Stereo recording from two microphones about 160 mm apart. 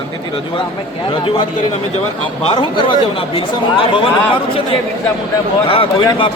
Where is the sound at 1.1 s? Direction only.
35° left (ahead or behind).